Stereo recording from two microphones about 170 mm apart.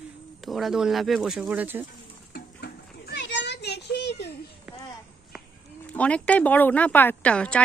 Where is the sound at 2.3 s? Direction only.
75° left (ahead or behind).